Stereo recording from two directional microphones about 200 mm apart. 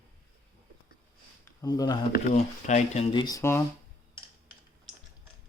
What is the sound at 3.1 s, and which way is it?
Speech, 20° left (ahead or behind).